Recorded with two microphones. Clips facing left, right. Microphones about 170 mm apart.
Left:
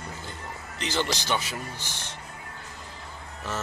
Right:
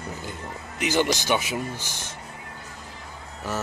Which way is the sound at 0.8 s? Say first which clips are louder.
Right 6 dB; 15° right (ahead or behind).